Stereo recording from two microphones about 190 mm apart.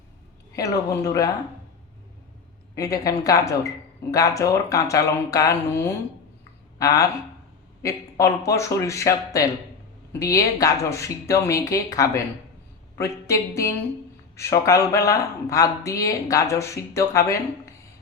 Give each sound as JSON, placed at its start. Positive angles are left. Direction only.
{"t": 0.5, "sound": "speech", "side_deg": 15}
{"t": 2.7, "sound": "speech", "side_deg": 15}